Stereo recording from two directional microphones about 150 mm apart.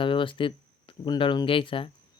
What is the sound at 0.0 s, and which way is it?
Speech, 35° left (ahead or behind).